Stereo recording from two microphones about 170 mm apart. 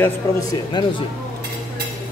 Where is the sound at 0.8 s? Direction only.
25° left (ahead or behind).